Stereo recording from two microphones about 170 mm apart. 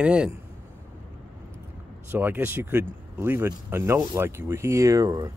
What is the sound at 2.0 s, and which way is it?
Speech, 10° right (ahead or behind).